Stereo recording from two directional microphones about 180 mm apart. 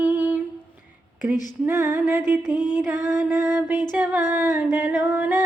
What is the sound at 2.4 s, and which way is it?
Music, 25° left (ahead or behind).